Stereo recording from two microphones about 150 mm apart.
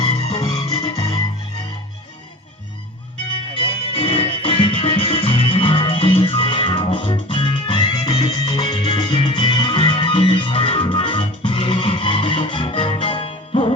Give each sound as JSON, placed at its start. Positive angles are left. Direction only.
{"t": 0.3, "sound": "music", "side_deg": 25}
{"t": 3.3, "sound": "music", "side_deg": 35}